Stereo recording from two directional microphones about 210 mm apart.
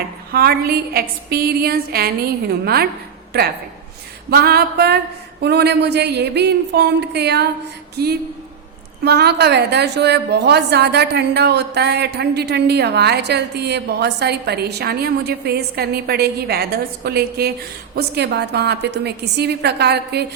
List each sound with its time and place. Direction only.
0.3 s a woman's voice: 45° right (ahead or behind)
4.3 s a woman's voice: 50° right (ahead or behind)